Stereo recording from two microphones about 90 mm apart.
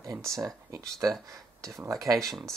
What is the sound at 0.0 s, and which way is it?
Speech, 35° right (ahead or behind).